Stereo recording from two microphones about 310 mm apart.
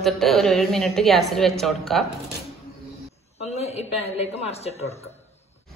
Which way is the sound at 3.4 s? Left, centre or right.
Centre.